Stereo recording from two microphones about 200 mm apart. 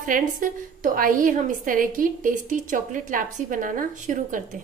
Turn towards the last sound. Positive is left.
turn(degrees=-40)  # may be behind; listen again after turning